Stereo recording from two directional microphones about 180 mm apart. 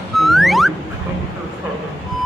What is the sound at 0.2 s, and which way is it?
Music, centre (ahead or behind).